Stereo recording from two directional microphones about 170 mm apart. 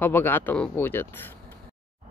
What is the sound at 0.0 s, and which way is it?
Speech, 10° left (ahead or behind).